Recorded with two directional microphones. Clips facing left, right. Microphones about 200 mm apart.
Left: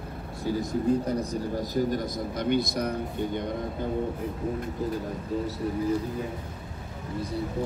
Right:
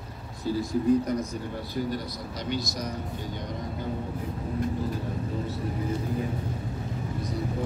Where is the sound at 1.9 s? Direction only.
55° left (ahead or behind).